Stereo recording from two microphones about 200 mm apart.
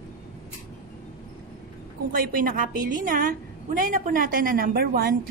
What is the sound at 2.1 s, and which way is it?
A woman's voice, 45° right (ahead or behind).